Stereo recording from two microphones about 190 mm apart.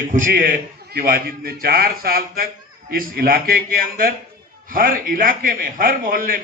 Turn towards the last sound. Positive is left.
turn(degrees=-45)  # may be behind; listen again after turning